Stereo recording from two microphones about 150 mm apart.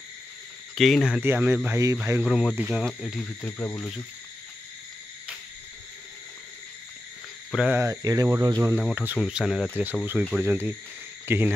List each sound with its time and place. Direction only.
0.7 s speech: centre (ahead or behind)
1.2 s speech: 15° right (ahead or behind)
2.2 s speech: 5° right (ahead or behind)
2.8 s speech: 5° left (ahead or behind)
3.2 s music: 15° left (ahead or behind)
7.5 s speech: 10° right (ahead or behind)
7.8 s speech: 25° right (ahead or behind)
8.7 s speech: 10° right (ahead or behind)